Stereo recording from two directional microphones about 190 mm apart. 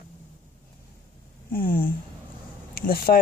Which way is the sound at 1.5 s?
50° left (ahead or behind).